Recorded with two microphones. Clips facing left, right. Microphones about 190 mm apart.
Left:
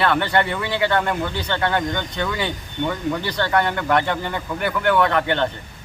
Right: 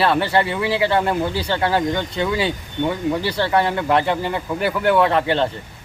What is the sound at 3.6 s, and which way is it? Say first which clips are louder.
Speech: right 1 dB; 30° right (ahead or behind).